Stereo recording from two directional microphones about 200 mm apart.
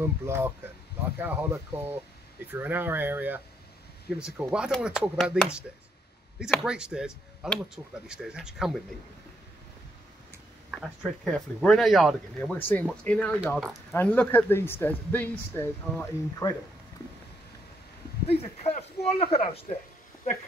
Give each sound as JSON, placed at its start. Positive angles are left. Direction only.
{"t": 0.0, "sound": "speech", "side_deg": -10}
{"t": 10.7, "sound": "speech", "side_deg": 0}
{"t": 18.3, "sound": "speech", "side_deg": 30}